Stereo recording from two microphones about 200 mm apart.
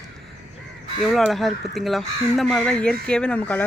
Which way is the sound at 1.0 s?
Centre (ahead or behind).